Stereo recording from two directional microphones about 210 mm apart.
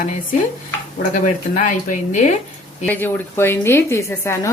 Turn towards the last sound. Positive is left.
turn(degrees=10)  # may be behind; listen again after turning